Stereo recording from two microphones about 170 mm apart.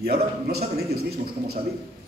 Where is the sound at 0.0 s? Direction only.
65° right (ahead or behind).